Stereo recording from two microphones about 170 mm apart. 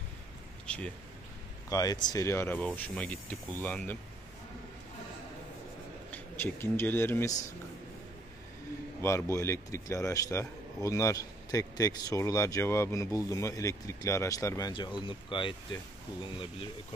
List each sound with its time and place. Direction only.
0.7 s speech: 5° left (ahead or behind)
1.7 s a man's voice: 20° left (ahead or behind)
6.1 s speech: 10° left (ahead or behind)
9.0 s a man's voice: 15° left (ahead or behind)